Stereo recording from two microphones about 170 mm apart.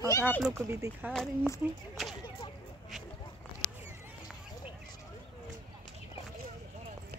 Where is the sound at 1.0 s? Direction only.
10° right (ahead or behind).